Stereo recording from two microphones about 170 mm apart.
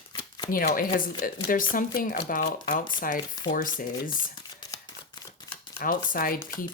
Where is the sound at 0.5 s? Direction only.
55° left (ahead or behind).